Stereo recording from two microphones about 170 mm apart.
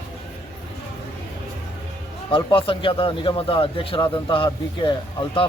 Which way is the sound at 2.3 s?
30° left (ahead or behind).